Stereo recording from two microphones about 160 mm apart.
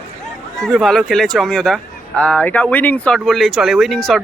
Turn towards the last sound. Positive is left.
turn(degrees=0)  # may be behind; listen again after turning